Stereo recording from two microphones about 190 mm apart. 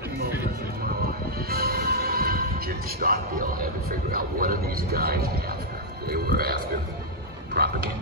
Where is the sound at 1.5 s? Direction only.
55° right (ahead or behind).